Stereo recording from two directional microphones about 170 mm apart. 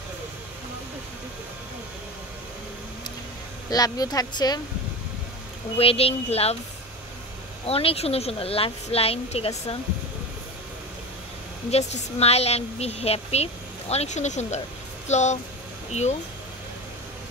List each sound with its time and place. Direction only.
3.7 s speech: 20° left (ahead or behind)
5.8 s a woman's voice: 35° left (ahead or behind)
7.6 s a woman's voice: 35° left (ahead or behind)
11.7 s a woman's voice: 40° left (ahead or behind)